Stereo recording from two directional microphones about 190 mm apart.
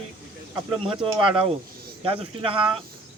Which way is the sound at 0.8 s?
25° right (ahead or behind).